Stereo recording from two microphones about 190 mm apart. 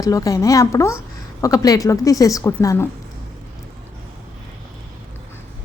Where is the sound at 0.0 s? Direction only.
20° left (ahead or behind).